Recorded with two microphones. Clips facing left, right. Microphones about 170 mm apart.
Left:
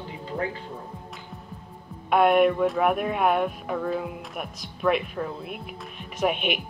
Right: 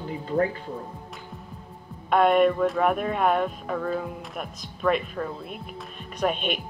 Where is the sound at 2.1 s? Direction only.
5° left (ahead or behind).